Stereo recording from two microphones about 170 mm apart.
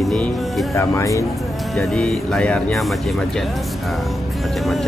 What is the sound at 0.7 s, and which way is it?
Speech, 20° left (ahead or behind).